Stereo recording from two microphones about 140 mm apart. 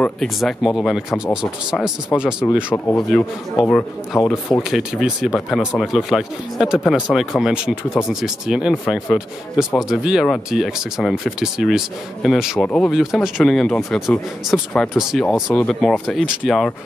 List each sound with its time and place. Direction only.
0.0 s speech: 5° left (ahead or behind)